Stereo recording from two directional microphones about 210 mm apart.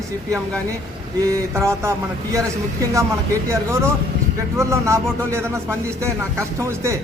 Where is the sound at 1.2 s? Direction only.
15° right (ahead or behind).